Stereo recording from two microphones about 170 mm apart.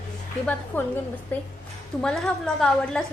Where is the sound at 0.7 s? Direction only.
10° left (ahead or behind).